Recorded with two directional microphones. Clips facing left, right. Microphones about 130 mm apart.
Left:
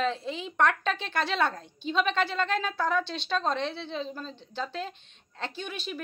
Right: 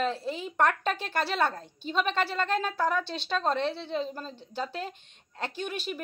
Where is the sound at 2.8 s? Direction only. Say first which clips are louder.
Even; 10° right (ahead or behind).